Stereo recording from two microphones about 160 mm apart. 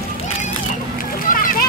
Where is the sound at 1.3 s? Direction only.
60° left (ahead or behind).